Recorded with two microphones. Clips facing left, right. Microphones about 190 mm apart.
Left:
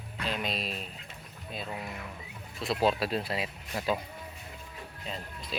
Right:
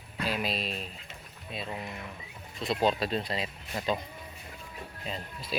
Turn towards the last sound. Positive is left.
turn(degrees=0)  # may be behind; listen again after turning